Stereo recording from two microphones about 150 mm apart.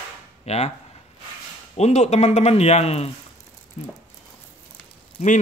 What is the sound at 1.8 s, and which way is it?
Speech, 45° left (ahead or behind).